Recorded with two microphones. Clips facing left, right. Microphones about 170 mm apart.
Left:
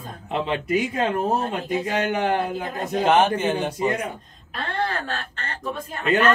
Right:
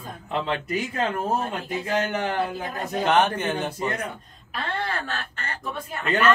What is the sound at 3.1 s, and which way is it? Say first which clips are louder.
Speech: left 2 dB; 10° left (ahead or behind).